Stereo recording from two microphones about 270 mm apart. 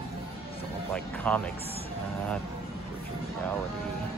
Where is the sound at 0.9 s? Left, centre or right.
Centre.